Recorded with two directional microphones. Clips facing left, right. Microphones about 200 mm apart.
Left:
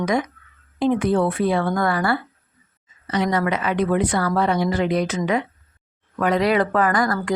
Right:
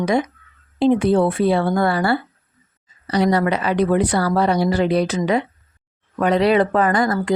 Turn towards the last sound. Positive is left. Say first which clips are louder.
# right 2 dB
turn(degrees=-25)  # may be behind; listen again after turning